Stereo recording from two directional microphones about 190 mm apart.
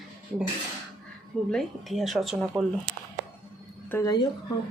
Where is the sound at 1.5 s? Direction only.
Centre (ahead or behind).